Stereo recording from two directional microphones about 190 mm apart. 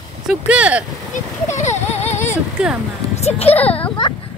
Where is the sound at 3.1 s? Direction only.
35° left (ahead or behind).